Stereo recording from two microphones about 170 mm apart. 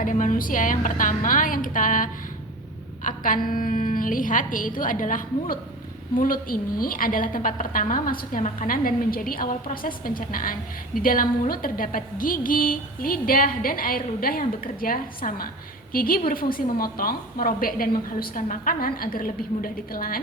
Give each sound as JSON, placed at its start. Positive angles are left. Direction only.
{"t": 0.0, "sound": "a woman's voice", "side_deg": 50}